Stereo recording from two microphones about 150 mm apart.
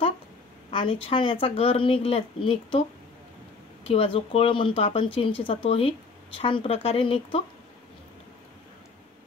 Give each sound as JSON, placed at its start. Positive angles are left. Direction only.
{"t": 0.7, "sound": "speech", "side_deg": 35}
{"t": 3.8, "sound": "speech", "side_deg": 40}